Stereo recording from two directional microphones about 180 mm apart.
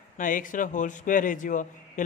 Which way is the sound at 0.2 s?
50° left (ahead or behind).